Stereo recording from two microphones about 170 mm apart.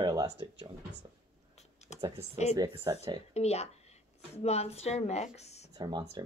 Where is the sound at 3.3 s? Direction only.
40° left (ahead or behind).